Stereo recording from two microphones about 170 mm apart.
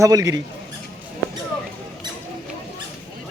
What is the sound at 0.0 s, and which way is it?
Speech, 20° right (ahead or behind).